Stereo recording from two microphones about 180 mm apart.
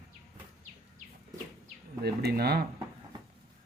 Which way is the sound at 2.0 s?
60° right (ahead or behind).